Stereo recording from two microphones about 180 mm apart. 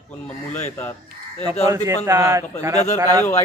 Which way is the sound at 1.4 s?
20° right (ahead or behind).